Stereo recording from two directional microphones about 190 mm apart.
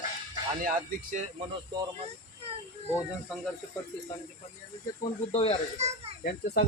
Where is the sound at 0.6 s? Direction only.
45° right (ahead or behind).